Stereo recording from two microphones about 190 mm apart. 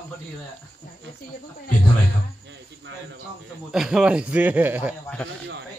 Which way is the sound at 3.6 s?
5° right (ahead or behind).